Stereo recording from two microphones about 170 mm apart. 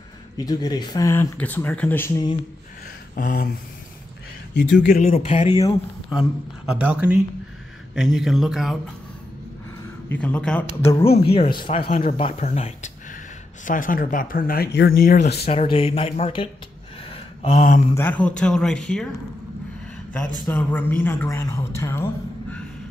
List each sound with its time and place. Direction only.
0.5 s speech: 25° left (ahead or behind)
3.2 s speech: 60° left (ahead or behind)
4.7 s speech: 50° left (ahead or behind)
6.0 s speech: 5° right (ahead or behind)
10.0 s speech: 10° left (ahead or behind)
11.1 s speech: 35° left (ahead or behind)
13.7 s speech: 55° left (ahead or behind)
15.3 s speech: 35° left (ahead or behind)
17.4 s speech: 45° left (ahead or behind)
17.9 s speech: 10° left (ahead or behind)
20.1 s speech: 5° left (ahead or behind)